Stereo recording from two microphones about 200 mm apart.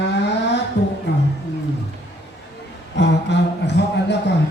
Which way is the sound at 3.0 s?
60° left (ahead or behind).